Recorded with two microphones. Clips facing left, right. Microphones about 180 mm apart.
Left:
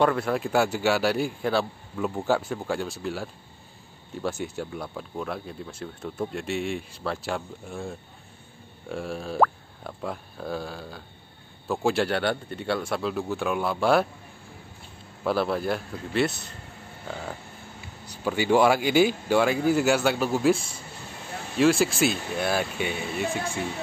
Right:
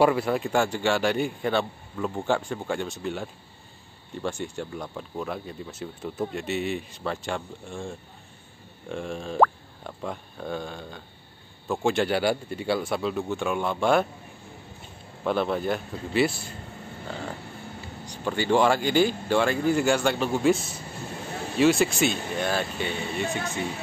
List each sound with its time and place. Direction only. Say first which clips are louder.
0.0 s speech: right 2 dB; 5° right (ahead or behind)
15.2 s speech: even; 5° left (ahead or behind)
18.2 s speech: left 1 dB; 10° left (ahead or behind)
20.5 s speech: right 2 dB; 25° right (ahead or behind)
21.5 s speech: even; centre (ahead or behind)